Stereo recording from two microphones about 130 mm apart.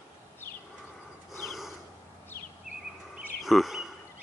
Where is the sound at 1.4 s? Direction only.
Centre (ahead or behind).